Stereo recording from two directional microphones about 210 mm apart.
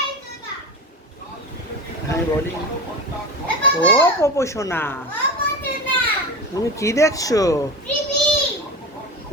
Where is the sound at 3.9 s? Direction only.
10° left (ahead or behind).